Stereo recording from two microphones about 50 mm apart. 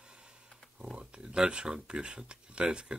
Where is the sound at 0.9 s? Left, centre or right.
Centre.